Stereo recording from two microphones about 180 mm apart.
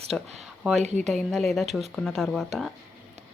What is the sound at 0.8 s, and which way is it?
Speech, 40° right (ahead or behind).